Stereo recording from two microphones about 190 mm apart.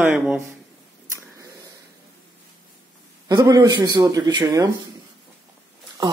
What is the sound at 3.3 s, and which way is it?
A man's voice, 20° right (ahead or behind).